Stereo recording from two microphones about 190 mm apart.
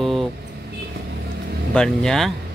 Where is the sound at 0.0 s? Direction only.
Centre (ahead or behind).